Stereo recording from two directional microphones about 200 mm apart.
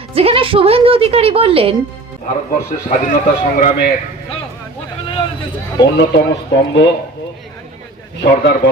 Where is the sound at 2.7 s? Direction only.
40° left (ahead or behind).